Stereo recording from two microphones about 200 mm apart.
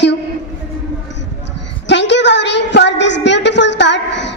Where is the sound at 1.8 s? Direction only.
60° left (ahead or behind).